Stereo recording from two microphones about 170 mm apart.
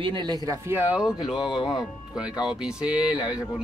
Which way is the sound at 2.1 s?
5° right (ahead or behind).